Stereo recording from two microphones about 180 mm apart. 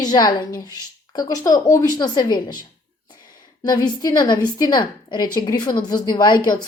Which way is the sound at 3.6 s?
25° left (ahead or behind).